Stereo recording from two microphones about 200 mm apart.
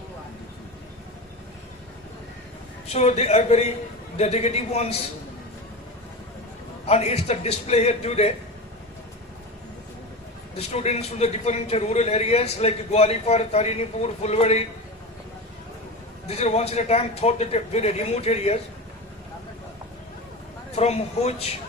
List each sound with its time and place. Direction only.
2.9 s a man's voice: 30° left (ahead or behind)
6.8 s a man's voice: 30° left (ahead or behind)
10.6 s a man's voice: 30° left (ahead or behind)
16.2 s a man's voice: 30° left (ahead or behind)
20.7 s a man's voice: 30° left (ahead or behind)